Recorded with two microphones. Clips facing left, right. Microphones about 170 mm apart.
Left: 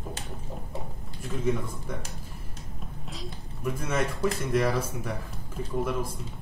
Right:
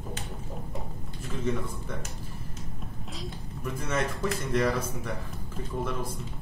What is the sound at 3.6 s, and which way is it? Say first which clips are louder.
Speech: left 2 dB; 10° left (ahead or behind).